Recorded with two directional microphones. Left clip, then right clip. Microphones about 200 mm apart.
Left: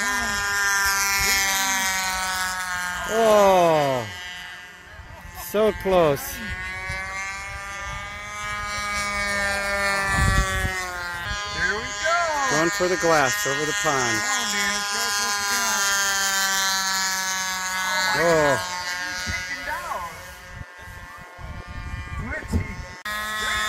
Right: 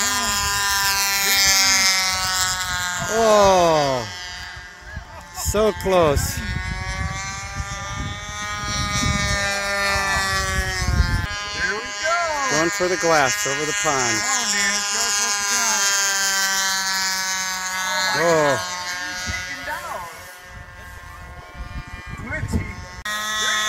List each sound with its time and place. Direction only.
0.0 s a sound: 60° right (ahead or behind); by 4.3 s 20° left (ahead or behind)
5.5 s speech: centre (ahead or behind)
6.4 s vehicle: 15° left (ahead or behind); by 11.5 s 10° right (ahead or behind)
12.4 s speech: 10° right (ahead or behind)
14.0 s a sound: 25° right (ahead or behind); by 19.8 s 20° left (ahead or behind)
23.0 s buzzer: 10° left (ahead or behind)